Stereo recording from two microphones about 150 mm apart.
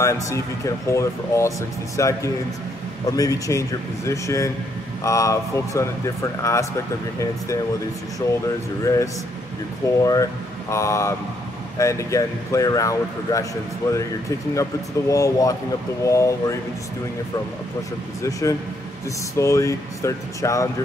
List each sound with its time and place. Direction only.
0.0 s speech: 20° left (ahead or behind)
8.8 s speech: 20° left (ahead or behind)
18.2 s speech: 20° left (ahead or behind)